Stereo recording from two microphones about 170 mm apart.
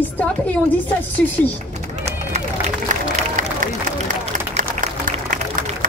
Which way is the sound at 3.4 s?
50° right (ahead or behind).